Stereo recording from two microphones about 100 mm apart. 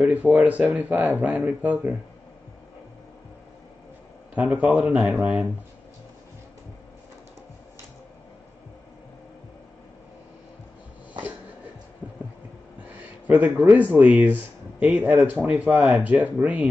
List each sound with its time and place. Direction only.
0.1 s speech: 15° right (ahead or behind)
4.4 s speech: 10° right (ahead or behind)
12.8 s a sound: 15° right (ahead or behind)
13.9 s speech: 15° right (ahead or behind)
15.1 s speech: centre (ahead or behind)
15.5 s speech: 20° right (ahead or behind)